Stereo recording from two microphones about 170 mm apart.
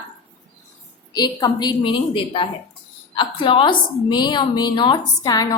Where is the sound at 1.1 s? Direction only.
25° left (ahead or behind).